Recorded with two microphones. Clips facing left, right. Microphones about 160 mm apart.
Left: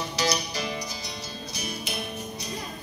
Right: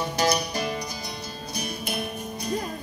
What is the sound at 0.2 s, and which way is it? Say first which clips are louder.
Music: right 4 dB; 55° right (ahead or behind).